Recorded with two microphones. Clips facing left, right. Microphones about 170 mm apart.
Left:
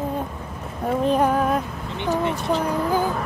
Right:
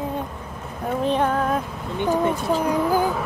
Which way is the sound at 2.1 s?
10° right (ahead or behind).